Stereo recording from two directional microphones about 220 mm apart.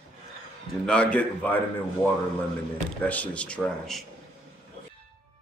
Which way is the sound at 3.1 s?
5° left (ahead or behind).